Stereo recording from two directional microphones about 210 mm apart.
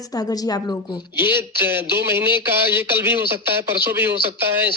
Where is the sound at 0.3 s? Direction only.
20° left (ahead or behind).